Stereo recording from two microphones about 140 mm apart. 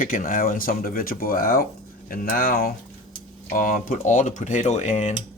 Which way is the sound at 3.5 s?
75° left (ahead or behind).